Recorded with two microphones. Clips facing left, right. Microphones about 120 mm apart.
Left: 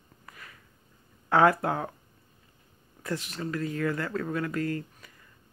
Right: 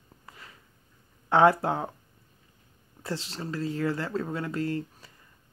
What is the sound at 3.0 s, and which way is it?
Speech, 25° right (ahead or behind).